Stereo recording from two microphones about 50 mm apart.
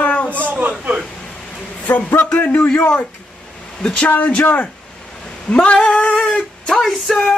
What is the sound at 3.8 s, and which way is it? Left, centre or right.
Singing, left.